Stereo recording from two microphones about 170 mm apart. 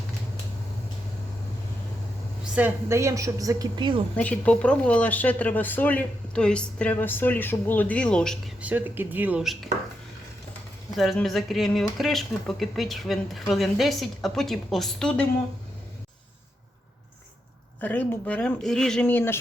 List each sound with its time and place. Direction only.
2.4 s a woman's voice: 10° right (ahead or behind); by 4.0 s 30° right (ahead or behind)
4.2 s speech: 10° left (ahead or behind)
8.6 s speech: 10° right (ahead or behind)
10.9 s speech: centre (ahead or behind)
17.7 s speech: 10° left (ahead or behind)